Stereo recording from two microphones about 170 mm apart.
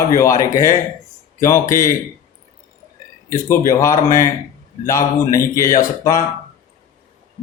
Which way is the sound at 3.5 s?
15° left (ahead or behind).